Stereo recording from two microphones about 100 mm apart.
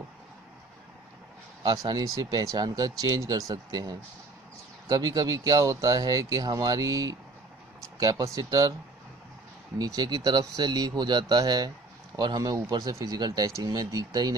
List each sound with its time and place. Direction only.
1.6 s speech: 45° right (ahead or behind)
8.4 s speech: 40° right (ahead or behind)
9.8 s speech: 40° right (ahead or behind)